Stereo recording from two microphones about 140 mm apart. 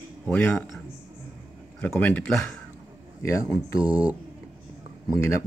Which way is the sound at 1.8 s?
10° left (ahead or behind).